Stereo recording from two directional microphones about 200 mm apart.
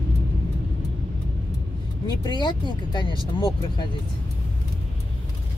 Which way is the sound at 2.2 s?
20° left (ahead or behind).